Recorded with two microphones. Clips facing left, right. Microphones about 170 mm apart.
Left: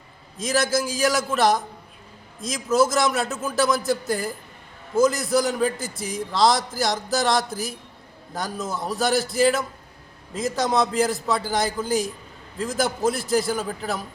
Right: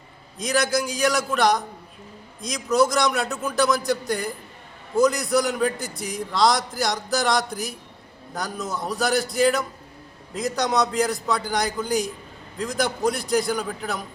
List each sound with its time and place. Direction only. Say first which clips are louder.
0.3 s a man's voice: even; centre (ahead or behind)